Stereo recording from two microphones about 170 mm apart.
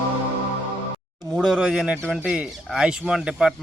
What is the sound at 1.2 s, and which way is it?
A man's voice, 5° right (ahead or behind).